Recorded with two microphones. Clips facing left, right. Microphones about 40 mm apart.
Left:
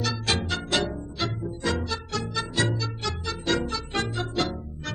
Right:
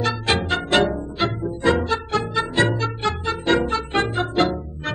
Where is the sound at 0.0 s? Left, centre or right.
Right.